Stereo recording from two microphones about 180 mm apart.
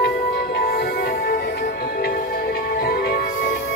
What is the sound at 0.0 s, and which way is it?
Music, 65° left (ahead or behind).